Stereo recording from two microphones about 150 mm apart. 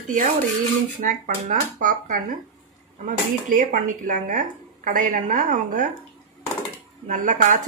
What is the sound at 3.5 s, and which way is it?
A woman's voice, 65° right (ahead or behind).